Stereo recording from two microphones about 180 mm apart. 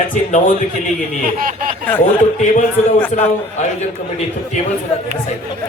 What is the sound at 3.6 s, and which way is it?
Speech, 40° left (ahead or behind).